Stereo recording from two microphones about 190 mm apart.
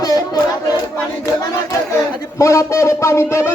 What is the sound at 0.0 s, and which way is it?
Crowd, 20° left (ahead or behind).